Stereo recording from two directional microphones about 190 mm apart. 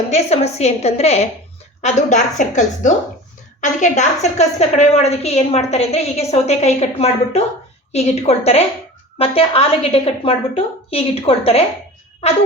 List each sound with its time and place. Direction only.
0.1 s a woman's voice: 35° left (ahead or behind)